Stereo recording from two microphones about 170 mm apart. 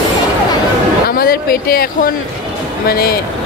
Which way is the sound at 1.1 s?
60° left (ahead or behind).